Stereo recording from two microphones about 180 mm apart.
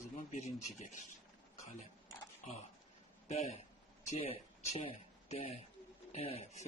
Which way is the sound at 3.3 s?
35° left (ahead or behind).